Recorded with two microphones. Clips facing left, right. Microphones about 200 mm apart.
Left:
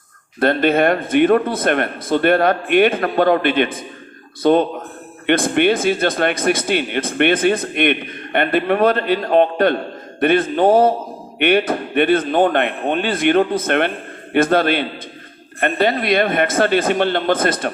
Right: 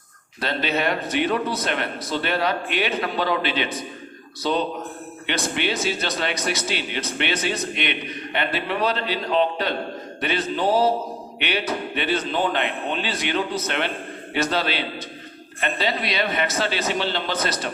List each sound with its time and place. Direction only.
0.3 s speech: 55° left (ahead or behind)